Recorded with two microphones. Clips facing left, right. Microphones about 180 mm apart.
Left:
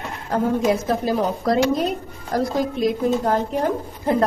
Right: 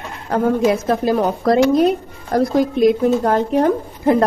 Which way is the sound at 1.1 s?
60° right (ahead or behind).